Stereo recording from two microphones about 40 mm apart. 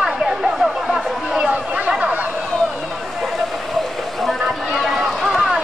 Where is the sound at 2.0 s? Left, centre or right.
Right.